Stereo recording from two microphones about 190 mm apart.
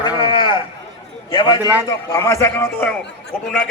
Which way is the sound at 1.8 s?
15° left (ahead or behind).